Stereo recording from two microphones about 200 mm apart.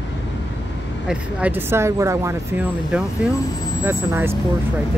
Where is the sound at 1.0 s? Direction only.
10° right (ahead or behind).